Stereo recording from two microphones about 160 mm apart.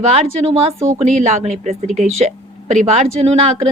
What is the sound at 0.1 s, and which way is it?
Speech, 40° right (ahead or behind).